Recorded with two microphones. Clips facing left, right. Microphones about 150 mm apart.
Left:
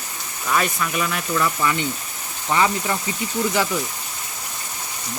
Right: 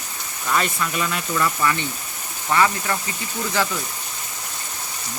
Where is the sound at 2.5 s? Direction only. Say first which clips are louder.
Even; 15° left (ahead or behind).